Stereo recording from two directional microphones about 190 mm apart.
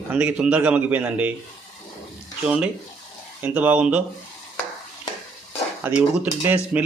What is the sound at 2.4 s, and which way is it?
A man's voice, 5° right (ahead or behind).